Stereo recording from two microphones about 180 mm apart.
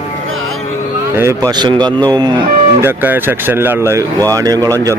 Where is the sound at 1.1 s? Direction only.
15° right (ahead or behind).